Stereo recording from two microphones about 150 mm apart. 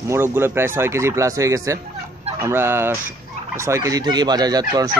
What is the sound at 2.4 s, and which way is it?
Speech, 15° right (ahead or behind).